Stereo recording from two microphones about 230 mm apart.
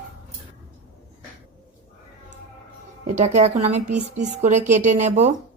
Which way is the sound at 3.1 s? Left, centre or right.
Right.